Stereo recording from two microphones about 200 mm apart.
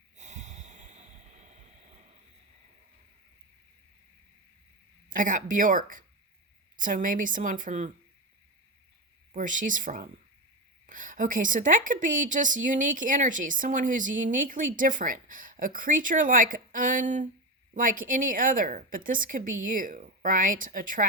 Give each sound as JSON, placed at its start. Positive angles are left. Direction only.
{"t": 0.2, "sound": "snort", "side_deg": -35}
{"t": 5.0, "sound": "a woman's voice", "side_deg": -40}
{"t": 9.3, "sound": "a woman's voice", "side_deg": -40}